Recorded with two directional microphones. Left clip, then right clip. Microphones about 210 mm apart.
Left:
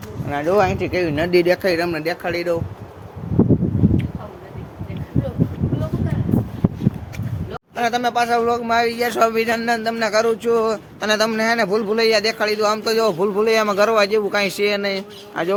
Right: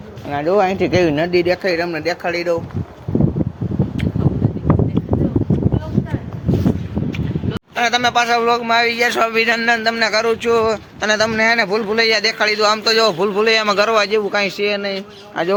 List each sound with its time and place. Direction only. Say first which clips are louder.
0.3 s speech: right 2 dB; 15° right (ahead or behind)
0.8 s speech: right 6 dB; 35° right (ahead or behind)
1.3 s speech: even; 5° left (ahead or behind)
2.0 s speech: right 3 dB; 15° right (ahead or behind)
7.8 s a man's voice: right 3 dB; 5° right (ahead or behind)